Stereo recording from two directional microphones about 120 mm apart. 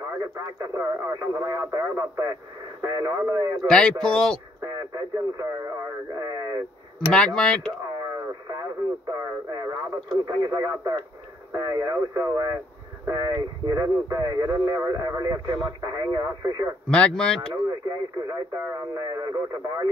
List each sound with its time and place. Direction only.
0.2 s speech: 25° right (ahead or behind)
3.6 s speech: 5° left (ahead or behind)
4.6 s speech: 30° right (ahead or behind)
6.1 s a sound: 30° right (ahead or behind)
7.3 s speech: 5° left (ahead or behind)
9.2 s speech: 25° right (ahead or behind)
16.9 s speech: 5° left (ahead or behind)
17.6 s speech: 25° right (ahead or behind)